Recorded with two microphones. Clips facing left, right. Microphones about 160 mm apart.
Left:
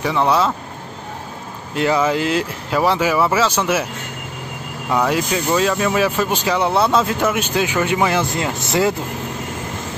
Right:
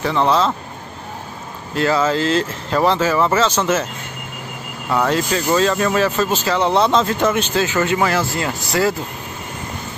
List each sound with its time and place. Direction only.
0.0 s speech: 10° left (ahead or behind)
1.8 s speech: 15° left (ahead or behind)
4.8 s speech: 10° left (ahead or behind)